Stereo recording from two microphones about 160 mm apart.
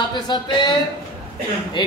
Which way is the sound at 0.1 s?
30° left (ahead or behind).